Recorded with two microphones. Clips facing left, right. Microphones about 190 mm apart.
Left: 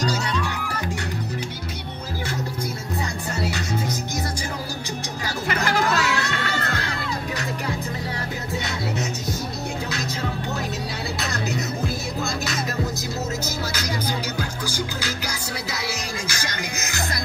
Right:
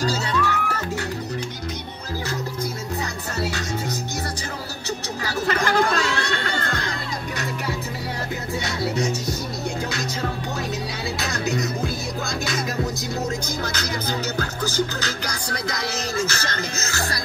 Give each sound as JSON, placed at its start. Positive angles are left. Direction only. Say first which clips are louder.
{"t": 0.0, "sound": "music", "louder": "right 2 dB", "side_deg": 15}
{"t": 5.5, "sound": "chatter", "louder": "right 2 dB", "side_deg": 10}
{"t": 11.1, "sound": "music", "louder": "right 3 dB", "side_deg": 0}
{"t": 14.4, "sound": "music", "louder": "right 4 dB", "side_deg": 10}